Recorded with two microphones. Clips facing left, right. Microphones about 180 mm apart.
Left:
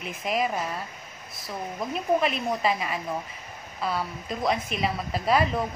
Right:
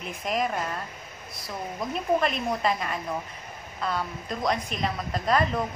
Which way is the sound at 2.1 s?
5° left (ahead or behind).